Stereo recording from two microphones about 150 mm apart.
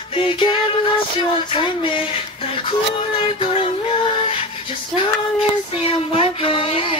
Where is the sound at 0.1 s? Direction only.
35° left (ahead or behind).